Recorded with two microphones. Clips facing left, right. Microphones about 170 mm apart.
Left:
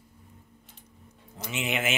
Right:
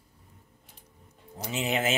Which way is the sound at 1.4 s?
35° right (ahead or behind).